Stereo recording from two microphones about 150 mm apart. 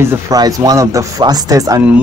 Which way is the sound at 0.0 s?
15° right (ahead or behind).